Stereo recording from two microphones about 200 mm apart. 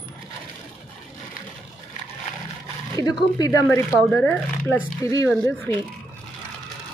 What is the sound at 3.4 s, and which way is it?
Speech, 15° left (ahead or behind).